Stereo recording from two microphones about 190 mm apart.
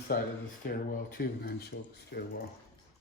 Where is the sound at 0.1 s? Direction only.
50° left (ahead or behind).